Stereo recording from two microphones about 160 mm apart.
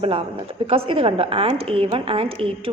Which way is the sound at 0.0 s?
35° right (ahead or behind).